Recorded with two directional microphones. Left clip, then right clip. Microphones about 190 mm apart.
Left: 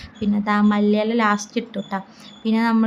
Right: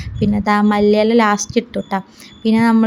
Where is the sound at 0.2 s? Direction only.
20° right (ahead or behind).